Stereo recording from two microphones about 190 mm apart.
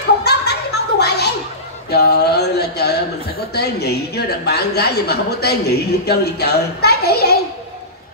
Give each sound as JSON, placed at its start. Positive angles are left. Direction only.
{"t": 0.2, "sound": "a sound", "side_deg": 60}
{"t": 1.9, "sound": "mantra", "side_deg": 60}
{"t": 3.5, "sound": "a woman's voice", "side_deg": 60}